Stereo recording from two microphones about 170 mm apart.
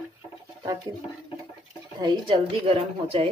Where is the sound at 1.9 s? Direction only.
30° right (ahead or behind).